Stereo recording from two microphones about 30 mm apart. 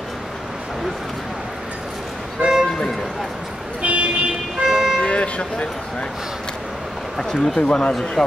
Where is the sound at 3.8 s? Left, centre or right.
Right.